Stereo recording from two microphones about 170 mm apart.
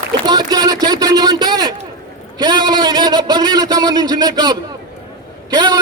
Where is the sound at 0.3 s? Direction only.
25° right (ahead or behind).